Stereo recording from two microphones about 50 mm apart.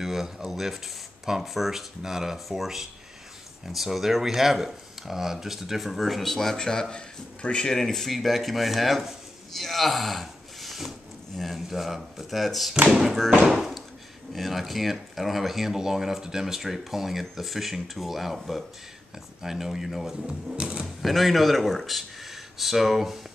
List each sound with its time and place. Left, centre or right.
0.0 s speech: centre
12.7 s speech: right
13.5 s speech: centre
20.2 s speech: centre
20.8 s speech: centre